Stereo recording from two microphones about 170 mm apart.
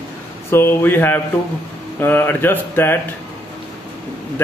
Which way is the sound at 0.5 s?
15° left (ahead or behind).